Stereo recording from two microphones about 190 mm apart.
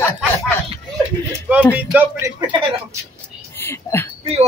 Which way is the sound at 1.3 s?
10° right (ahead or behind).